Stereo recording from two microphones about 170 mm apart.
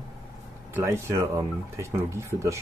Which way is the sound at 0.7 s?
15° right (ahead or behind).